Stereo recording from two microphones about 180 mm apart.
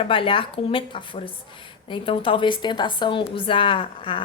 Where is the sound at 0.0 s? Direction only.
30° left (ahead or behind).